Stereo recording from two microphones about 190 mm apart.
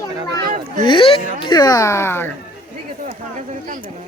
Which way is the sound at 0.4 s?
45° right (ahead or behind).